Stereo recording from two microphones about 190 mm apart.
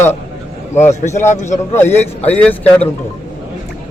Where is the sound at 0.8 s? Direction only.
35° left (ahead or behind).